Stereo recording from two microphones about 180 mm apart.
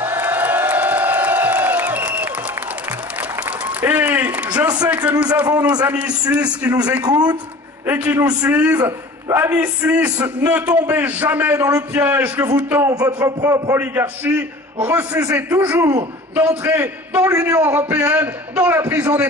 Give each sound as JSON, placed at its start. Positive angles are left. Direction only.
{"t": 0.0, "sound": "crowd", "side_deg": -10}
{"t": 3.4, "sound": "applause", "side_deg": -10}
{"t": 4.8, "sound": "a man's voice", "side_deg": -10}
{"t": 7.0, "sound": "a man's voice", "side_deg": -20}
{"t": 7.8, "sound": "a man's voice", "side_deg": -10}